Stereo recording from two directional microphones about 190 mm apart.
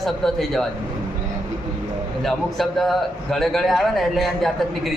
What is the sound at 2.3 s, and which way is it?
A man's voice, centre (ahead or behind).